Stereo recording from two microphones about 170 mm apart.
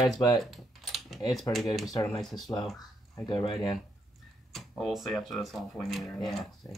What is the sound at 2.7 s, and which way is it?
Speech, 25° left (ahead or behind).